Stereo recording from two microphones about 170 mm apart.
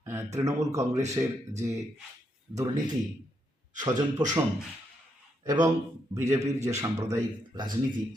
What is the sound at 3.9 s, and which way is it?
Speech, 45° right (ahead or behind).